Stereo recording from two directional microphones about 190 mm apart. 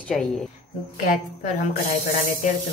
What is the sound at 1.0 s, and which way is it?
Speech, 45° left (ahead or behind).